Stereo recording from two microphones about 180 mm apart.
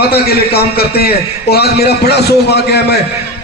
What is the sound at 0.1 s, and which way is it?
A man's voice, 60° left (ahead or behind).